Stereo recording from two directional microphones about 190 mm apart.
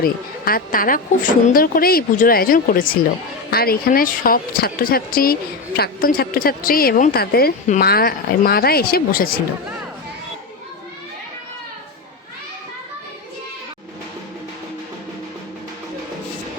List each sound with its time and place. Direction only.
0.0 s a woman's voice: 50° left (ahead or behind)